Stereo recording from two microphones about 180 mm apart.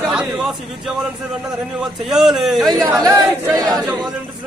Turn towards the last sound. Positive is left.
turn(degrees=-20)  # may be behind; listen again after turning